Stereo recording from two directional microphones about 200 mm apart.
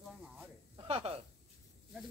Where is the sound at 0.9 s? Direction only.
30° right (ahead or behind).